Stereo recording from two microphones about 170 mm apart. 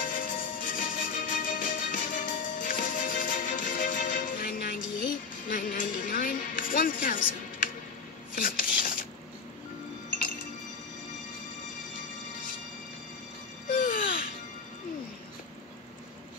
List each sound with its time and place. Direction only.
0.0 s music: 55° left (ahead or behind)
8.4 s a sound: 55° left (ahead or behind)
13.8 s music: 55° left (ahead or behind)